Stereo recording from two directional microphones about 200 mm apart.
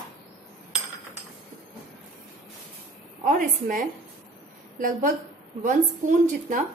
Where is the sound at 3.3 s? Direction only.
40° right (ahead or behind).